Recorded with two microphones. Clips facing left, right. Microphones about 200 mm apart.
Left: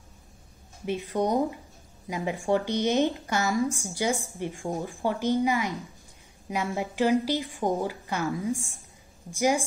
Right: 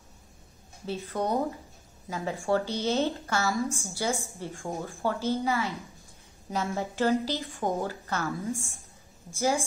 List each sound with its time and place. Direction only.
0.8 s a woman's voice: 15° left (ahead or behind)